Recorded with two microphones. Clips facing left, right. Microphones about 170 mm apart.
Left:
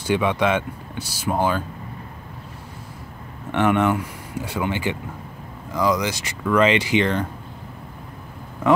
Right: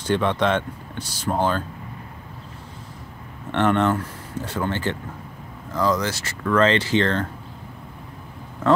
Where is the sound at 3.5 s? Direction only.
10° left (ahead or behind).